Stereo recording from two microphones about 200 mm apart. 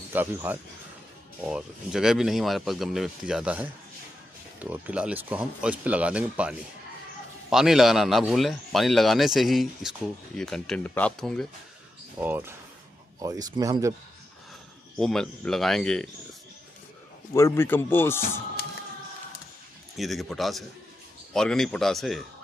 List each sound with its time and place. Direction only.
0.1 s a man's voice: 10° right (ahead or behind)
12.2 s speech: 10° right (ahead or behind)
15.0 s a man's voice: centre (ahead or behind)
17.3 s speech: 15° left (ahead or behind)
20.0 s a man's voice: centre (ahead or behind)